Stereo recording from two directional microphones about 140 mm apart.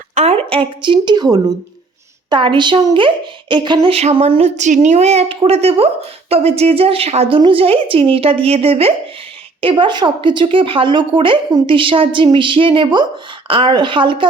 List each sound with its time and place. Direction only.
0.1 s speech: 50° right (ahead or behind); by 3.9 s 35° right (ahead or behind)
3.9 s a woman's voice: 50° right (ahead or behind)